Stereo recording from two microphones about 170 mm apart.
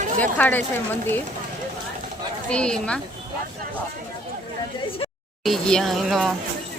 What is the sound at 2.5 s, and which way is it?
Speech, 5° left (ahead or behind).